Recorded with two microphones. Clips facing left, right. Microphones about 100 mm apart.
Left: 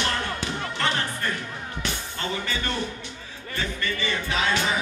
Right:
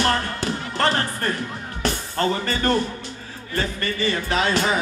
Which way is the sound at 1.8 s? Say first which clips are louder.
Right 10 dB; 40° right (ahead or behind).